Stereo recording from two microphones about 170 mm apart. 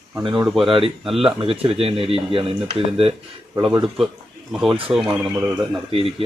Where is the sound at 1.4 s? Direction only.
35° right (ahead or behind).